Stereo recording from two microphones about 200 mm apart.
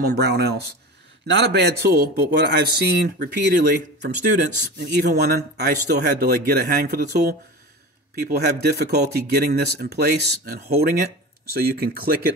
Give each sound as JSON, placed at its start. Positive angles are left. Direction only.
{"t": 0.0, "sound": "speech", "side_deg": -55}